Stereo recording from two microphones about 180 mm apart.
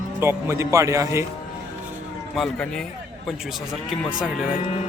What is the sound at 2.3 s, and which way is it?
Speech, centre (ahead or behind).